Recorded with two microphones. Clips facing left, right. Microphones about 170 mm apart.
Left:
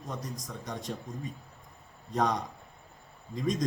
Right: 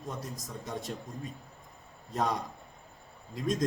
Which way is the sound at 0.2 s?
5° right (ahead or behind).